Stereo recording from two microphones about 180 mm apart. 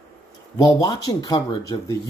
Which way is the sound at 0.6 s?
20° left (ahead or behind).